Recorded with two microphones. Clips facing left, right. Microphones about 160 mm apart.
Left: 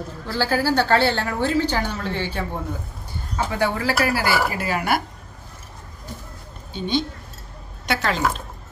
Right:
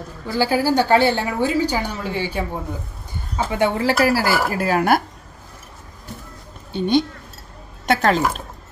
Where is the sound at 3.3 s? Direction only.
25° right (ahead or behind).